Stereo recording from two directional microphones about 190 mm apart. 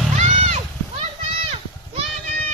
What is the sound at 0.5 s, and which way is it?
Children playing, 30° right (ahead or behind).